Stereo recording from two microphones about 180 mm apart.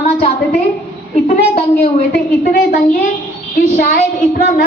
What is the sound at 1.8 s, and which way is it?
A woman's voice, 60° left (ahead or behind).